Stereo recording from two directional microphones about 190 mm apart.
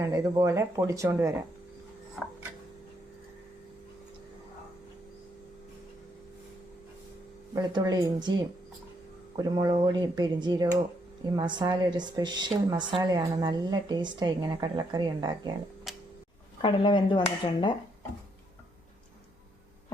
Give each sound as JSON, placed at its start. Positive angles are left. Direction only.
{"t": 0.0, "sound": "speech", "side_deg": -15}
{"t": 2.2, "sound": "a sound", "side_deg": 0}
{"t": 7.5, "sound": "speech", "side_deg": -20}
{"t": 15.9, "sound": "tick-tock", "side_deg": 0}
{"t": 16.6, "sound": "speech", "side_deg": 25}